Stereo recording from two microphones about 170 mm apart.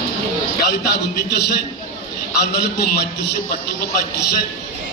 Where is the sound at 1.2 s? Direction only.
70° left (ahead or behind).